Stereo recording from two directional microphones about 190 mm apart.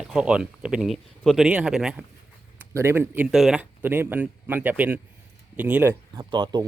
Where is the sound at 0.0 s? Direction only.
5° right (ahead or behind).